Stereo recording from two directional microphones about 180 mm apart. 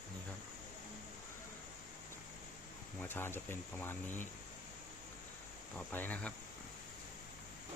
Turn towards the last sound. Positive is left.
turn(degrees=10)  # may be behind; listen again after turning